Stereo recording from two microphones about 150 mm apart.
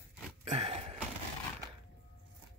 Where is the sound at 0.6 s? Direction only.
40° right (ahead or behind).